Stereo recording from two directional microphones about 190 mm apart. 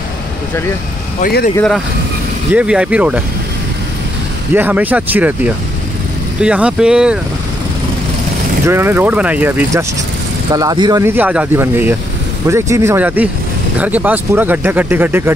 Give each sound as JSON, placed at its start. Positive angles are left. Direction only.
{"t": 1.2, "sound": "speech", "side_deg": 50}
{"t": 2.5, "sound": "speech", "side_deg": -5}
{"t": 4.6, "sound": "speech", "side_deg": -10}
{"t": 8.6, "sound": "speech", "side_deg": -10}
{"t": 10.5, "sound": "speech", "side_deg": -20}